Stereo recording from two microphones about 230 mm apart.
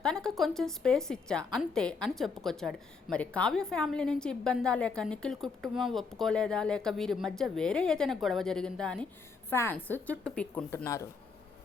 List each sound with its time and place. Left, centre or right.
0.0 s a woman's voice: centre